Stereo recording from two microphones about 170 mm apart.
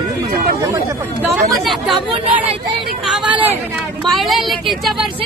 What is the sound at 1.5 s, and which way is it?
Speech, centre (ahead or behind).